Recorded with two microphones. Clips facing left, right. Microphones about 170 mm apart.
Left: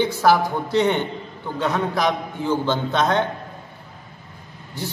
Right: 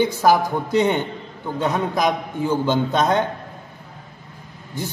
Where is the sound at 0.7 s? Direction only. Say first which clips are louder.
Right 1 dB; 10° right (ahead or behind).